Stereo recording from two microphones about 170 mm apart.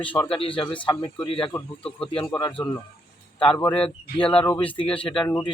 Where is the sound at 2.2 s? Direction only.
20° left (ahead or behind).